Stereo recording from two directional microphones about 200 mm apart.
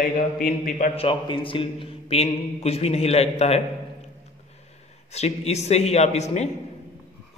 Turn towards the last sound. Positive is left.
turn(degrees=35)  # may be behind; listen again after turning